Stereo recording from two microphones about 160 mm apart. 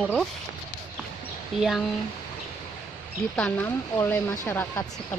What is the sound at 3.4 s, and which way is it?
Speech, 10° left (ahead or behind).